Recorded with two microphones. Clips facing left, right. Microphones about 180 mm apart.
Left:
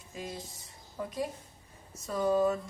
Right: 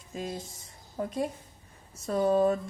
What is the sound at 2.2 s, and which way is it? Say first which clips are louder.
Speech: right 2 dB; 35° right (ahead or behind).